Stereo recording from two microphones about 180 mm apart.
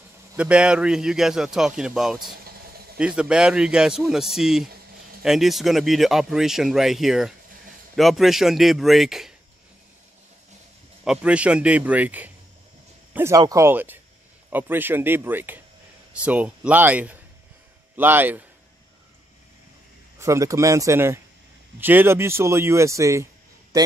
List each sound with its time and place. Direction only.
0.4 s speech: 5° right (ahead or behind)
11.1 s speech: 5° right (ahead or behind)
20.2 s speech: 15° right (ahead or behind)